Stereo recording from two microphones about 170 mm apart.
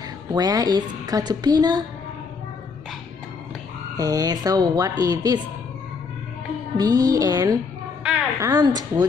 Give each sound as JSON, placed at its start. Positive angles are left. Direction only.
{"t": 0.3, "sound": "a woman's voice", "side_deg": -20}
{"t": 3.9, "sound": "a woman's voice", "side_deg": -20}
{"t": 6.8, "sound": "a woman's voice", "side_deg": -20}
{"t": 8.0, "sound": "a sound", "side_deg": -5}
{"t": 8.5, "sound": "a woman's voice", "side_deg": -25}